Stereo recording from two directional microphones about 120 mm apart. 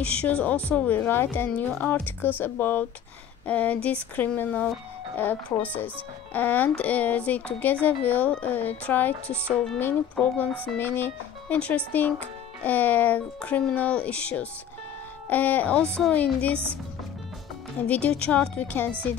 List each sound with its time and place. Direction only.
0.0 s speech: 10° left (ahead or behind)
17.7 s speech: 10° left (ahead or behind)